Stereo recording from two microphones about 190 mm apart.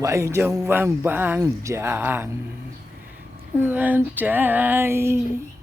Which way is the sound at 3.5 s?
10° right (ahead or behind).